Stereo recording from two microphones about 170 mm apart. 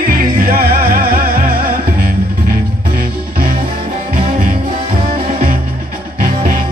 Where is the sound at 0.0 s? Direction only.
55° right (ahead or behind).